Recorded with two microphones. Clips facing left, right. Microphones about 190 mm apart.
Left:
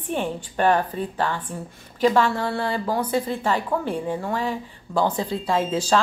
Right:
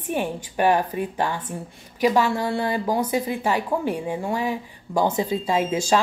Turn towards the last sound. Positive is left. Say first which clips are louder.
# even
turn(degrees=-10)  # may be behind; listen again after turning